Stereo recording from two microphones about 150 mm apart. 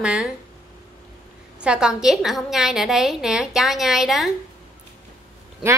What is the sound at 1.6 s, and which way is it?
A woman's voice, 5° right (ahead or behind).